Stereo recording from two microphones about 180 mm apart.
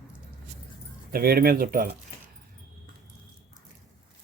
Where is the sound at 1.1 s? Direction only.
55° right (ahead or behind).